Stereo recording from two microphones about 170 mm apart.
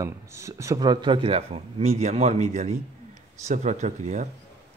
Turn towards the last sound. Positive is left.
turn(degrees=-45)  # may be behind; listen again after turning